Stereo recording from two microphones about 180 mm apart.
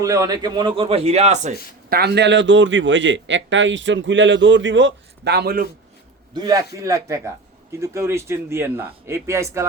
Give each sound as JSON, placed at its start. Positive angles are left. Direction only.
{"t": 0.0, "sound": "a man's voice", "side_deg": -20}
{"t": 1.9, "sound": "a man's voice", "side_deg": -65}
{"t": 6.3, "sound": "a man's voice", "side_deg": -25}